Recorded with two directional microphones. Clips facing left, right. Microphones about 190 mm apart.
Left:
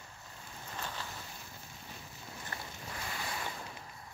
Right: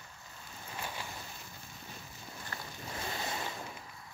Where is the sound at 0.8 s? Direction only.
10° right (ahead or behind).